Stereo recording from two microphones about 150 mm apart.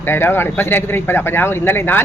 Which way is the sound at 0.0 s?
15° left (ahead or behind).